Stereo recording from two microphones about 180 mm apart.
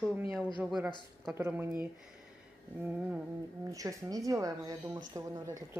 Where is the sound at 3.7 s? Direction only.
20° right (ahead or behind).